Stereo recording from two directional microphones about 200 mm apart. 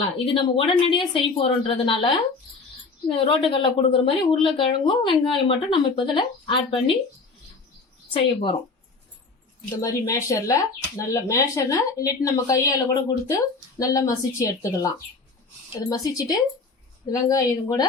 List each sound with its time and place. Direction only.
0.3 s speech: 25° left (ahead or behind)
3.2 s speech: 25° left (ahead or behind)
8.1 s speech: 25° left (ahead or behind)
9.8 s speech: 15° left (ahead or behind)